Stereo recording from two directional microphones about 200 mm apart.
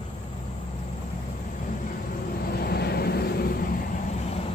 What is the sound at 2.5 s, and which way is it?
Vehicle, 50° left (ahead or behind).